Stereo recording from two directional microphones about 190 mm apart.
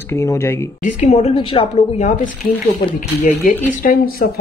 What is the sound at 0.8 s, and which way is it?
A woman's voice, 40° left (ahead or behind).